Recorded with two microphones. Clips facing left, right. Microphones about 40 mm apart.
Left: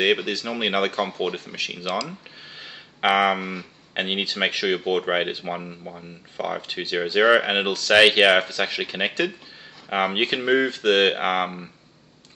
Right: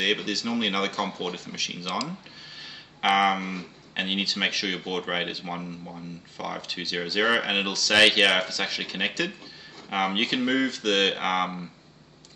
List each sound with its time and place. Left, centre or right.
0.0 s speech: centre
3.0 s speech: centre